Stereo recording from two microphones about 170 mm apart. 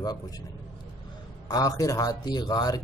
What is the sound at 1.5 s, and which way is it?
A man's voice, 20° left (ahead or behind).